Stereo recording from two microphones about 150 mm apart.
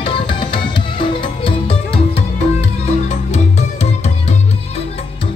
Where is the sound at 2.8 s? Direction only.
50° left (ahead or behind).